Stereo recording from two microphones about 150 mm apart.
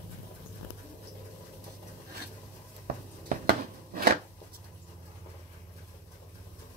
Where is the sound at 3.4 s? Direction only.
90° right.